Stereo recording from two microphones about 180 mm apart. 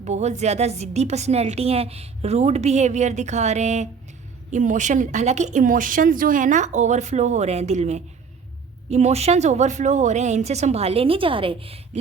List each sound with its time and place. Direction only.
0.0 s a woman's voice: 40° right (ahead or behind)